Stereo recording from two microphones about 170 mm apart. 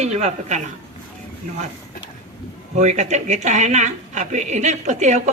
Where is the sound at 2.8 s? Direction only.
45° right (ahead or behind).